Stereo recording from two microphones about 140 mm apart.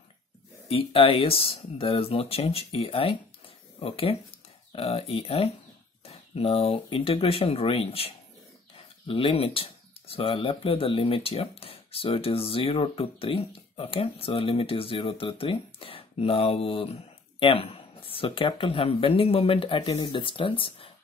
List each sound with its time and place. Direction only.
0.7 s speech: 45° left (ahead or behind)